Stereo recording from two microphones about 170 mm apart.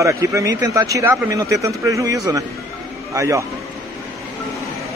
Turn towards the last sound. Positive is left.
turn(degrees=-15)  # may be behind; listen again after turning